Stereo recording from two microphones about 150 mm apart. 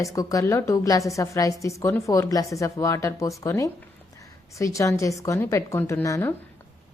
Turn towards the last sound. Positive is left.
turn(degrees=20)  # may be behind; listen again after turning